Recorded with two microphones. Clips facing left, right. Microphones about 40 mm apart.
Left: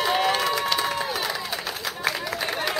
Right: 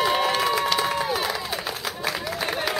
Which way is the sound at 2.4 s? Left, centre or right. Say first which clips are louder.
Right 1 dB; centre.